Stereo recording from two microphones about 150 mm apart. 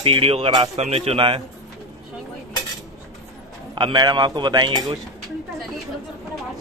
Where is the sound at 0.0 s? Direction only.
40° right (ahead or behind).